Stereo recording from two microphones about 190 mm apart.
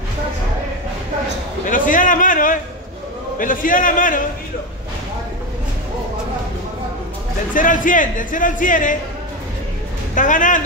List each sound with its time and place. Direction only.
1.7 s speech: 45° left (ahead or behind)
7.5 s speech: 45° left (ahead or behind)
10.1 s speech: 45° left (ahead or behind)